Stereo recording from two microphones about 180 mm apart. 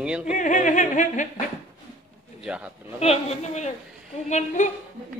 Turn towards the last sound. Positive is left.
turn(degrees=40)  # may be behind; listen again after turning